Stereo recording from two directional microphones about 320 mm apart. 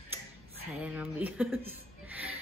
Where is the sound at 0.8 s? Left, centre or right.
Centre.